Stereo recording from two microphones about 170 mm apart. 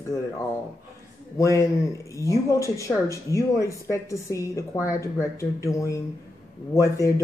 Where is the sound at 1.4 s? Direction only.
20° left (ahead or behind).